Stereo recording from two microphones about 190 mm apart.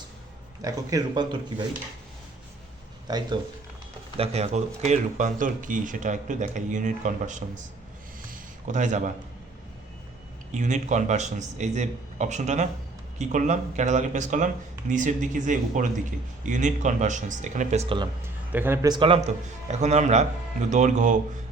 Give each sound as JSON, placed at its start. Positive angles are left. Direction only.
{"t": 0.6, "sound": "a man's voice", "side_deg": -20}
{"t": 3.1, "sound": "a man's voice", "side_deg": -20}
{"t": 4.2, "sound": "speech", "side_deg": -35}
{"t": 8.6, "sound": "speech", "side_deg": -40}
{"t": 10.5, "sound": "speech", "side_deg": -40}
{"t": 18.5, "sound": "a man's voice", "side_deg": -10}